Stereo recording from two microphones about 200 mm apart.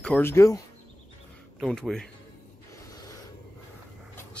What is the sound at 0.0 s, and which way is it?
Speech, 10° left (ahead or behind).